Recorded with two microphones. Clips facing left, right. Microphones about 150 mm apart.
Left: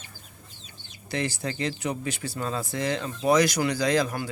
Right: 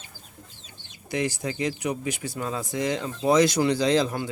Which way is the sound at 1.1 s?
15° right (ahead or behind).